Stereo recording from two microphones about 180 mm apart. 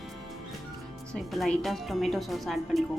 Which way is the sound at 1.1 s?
Centre (ahead or behind).